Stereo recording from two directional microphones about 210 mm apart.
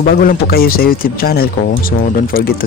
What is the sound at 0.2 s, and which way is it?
Speech, 45° left (ahead or behind).